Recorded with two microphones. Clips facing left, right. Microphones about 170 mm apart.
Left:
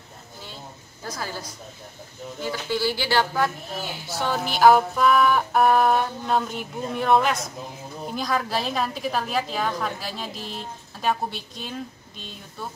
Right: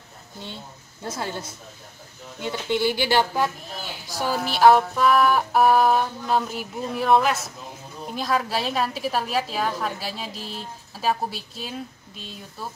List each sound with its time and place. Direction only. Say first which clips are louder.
1.0 s a woman's voice: right 2 dB; 25° right (ahead or behind); by 12.6 s 5° right (ahead or behind)